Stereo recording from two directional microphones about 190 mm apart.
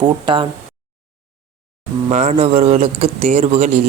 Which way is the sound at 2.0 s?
35° right (ahead or behind).